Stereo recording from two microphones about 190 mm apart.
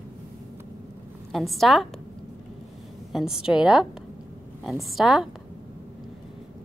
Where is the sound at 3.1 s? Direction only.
5° right (ahead or behind).